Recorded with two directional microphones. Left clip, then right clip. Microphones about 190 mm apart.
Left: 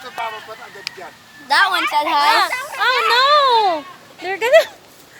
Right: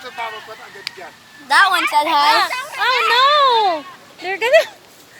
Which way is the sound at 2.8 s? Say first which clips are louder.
Right 1 dB; 5° right (ahead or behind).